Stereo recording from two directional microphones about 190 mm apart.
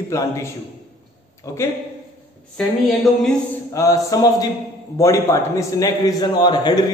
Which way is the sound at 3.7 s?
15° left (ahead or behind).